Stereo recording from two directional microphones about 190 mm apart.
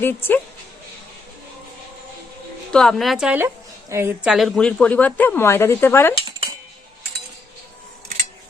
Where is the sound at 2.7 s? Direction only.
Centre (ahead or behind).